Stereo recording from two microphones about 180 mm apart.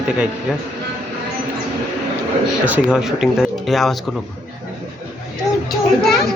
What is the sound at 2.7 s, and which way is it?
A child's voice, 5° right (ahead or behind).